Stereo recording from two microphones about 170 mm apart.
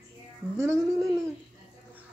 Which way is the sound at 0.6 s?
15° right (ahead or behind).